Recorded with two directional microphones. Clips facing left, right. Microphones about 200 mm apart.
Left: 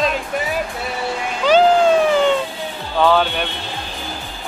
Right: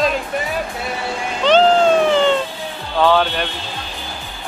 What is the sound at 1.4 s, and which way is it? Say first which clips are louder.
Cat: even; 10° left (ahead or behind).